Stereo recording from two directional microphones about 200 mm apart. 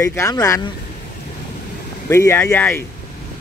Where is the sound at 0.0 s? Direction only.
15° left (ahead or behind).